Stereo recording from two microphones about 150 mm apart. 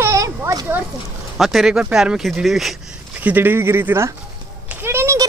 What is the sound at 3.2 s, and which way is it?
Speech, 10° right (ahead or behind).